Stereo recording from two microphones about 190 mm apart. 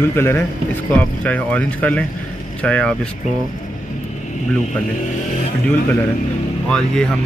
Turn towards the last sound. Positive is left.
turn(degrees=5)  # may be behind; listen again after turning